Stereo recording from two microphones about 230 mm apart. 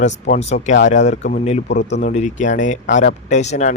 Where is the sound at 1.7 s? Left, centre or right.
Left.